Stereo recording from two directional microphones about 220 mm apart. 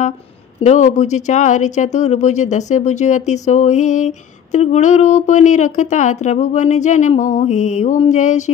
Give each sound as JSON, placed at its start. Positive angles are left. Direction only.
{"t": 0.6, "sound": "speech", "side_deg": 30}